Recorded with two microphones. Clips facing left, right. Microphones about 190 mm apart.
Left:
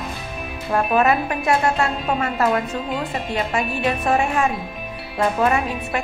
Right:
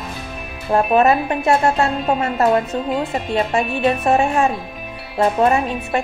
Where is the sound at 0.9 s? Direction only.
30° right (ahead or behind).